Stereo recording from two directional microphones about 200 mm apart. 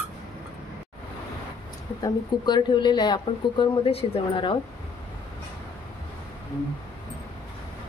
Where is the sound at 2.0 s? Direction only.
20° left (ahead or behind).